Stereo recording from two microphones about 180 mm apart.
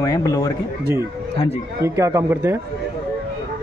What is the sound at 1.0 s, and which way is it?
Speech, 30° left (ahead or behind).